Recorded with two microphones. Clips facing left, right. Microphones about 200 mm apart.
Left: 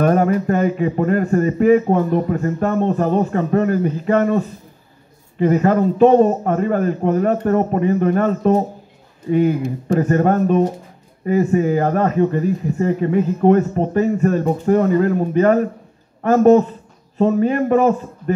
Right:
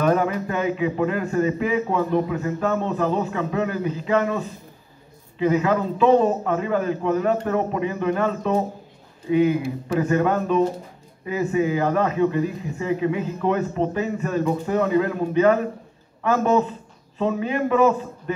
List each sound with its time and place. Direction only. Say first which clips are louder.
0.0 s speech: left 5 dB; 45° left (ahead or behind)